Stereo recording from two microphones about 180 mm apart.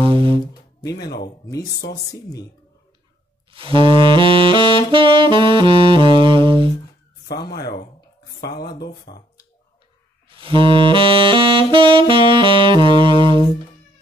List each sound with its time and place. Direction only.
0.0 s music: 30° right (ahead or behind)
3.5 s saxophone: 30° right (ahead or behind)
7.4 s speech: 60° left (ahead or behind)
10.3 s saxophone: 30° right (ahead or behind)